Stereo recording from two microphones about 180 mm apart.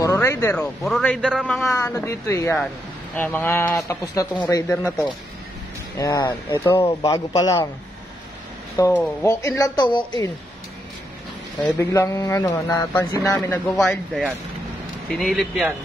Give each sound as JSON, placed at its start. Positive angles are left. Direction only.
{"t": 0.0, "sound": "a sound", "side_deg": 15}
{"t": 0.6, "sound": "a man's voice", "side_deg": 5}
{"t": 1.7, "sound": "a woman's voice", "side_deg": 15}
{"t": 6.8, "sound": "a man's voice", "side_deg": 30}
{"t": 8.7, "sound": "a woman's voice", "side_deg": 15}
{"t": 11.8, "sound": "a woman's voice", "side_deg": 15}
{"t": 13.3, "sound": "a man's voice", "side_deg": 5}